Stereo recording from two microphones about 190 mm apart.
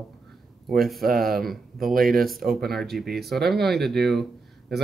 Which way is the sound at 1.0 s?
50° right (ahead or behind).